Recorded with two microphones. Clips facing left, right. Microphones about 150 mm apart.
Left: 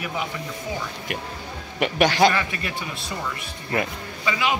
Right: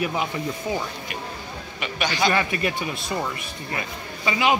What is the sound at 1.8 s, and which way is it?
Speech, 70° left (ahead or behind).